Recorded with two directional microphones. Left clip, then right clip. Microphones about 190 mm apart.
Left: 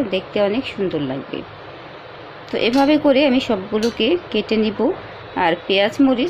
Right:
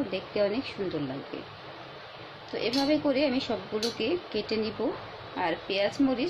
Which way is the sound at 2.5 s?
40° left (ahead or behind).